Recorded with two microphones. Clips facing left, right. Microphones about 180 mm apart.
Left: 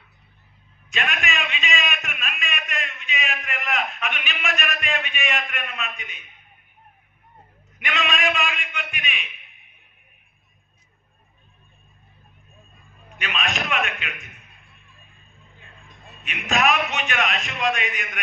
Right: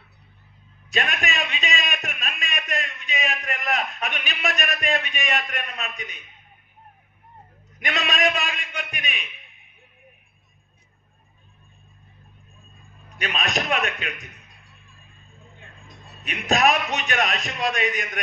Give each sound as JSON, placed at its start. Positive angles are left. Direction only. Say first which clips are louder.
{"t": 0.8, "sound": "a sound", "louder": "right 1 dB", "side_deg": -35}
{"t": 7.8, "sound": "a man's voice", "louder": "right 1 dB", "side_deg": -35}
{"t": 13.1, "sound": "a man's voice", "louder": "right 2 dB", "side_deg": -35}
{"t": 15.9, "sound": "a man's voice", "louder": "right 2 dB", "side_deg": -35}